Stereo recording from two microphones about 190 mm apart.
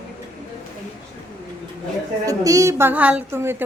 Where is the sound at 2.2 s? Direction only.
15° right (ahead or behind).